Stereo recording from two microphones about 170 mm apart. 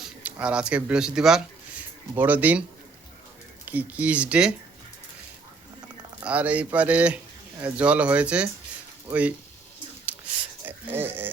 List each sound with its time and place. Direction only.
0.0 s speech: 10° right (ahead or behind)
3.7 s speech: 10° right (ahead or behind)
6.2 s speech: 10° right (ahead or behind)
10.1 s a sound: 10° right (ahead or behind)